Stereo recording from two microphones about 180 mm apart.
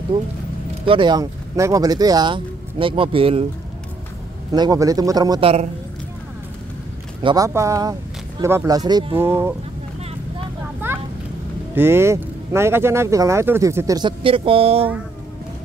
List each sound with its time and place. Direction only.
0.8 s speech: 25° right (ahead or behind)
4.5 s speech: 20° right (ahead or behind)
7.2 s speech: 30° right (ahead or behind)
7.4 s speech: 15° right (ahead or behind)
11.7 s speech: 10° right (ahead or behind); by 14.9 s 30° right (ahead or behind)